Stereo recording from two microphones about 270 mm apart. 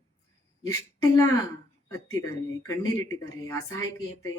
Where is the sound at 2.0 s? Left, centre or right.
Left.